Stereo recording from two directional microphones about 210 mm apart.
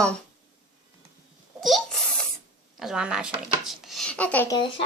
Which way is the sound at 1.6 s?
Centre (ahead or behind).